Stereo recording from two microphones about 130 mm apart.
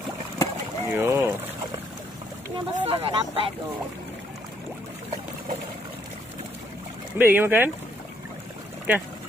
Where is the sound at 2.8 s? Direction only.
45° right (ahead or behind).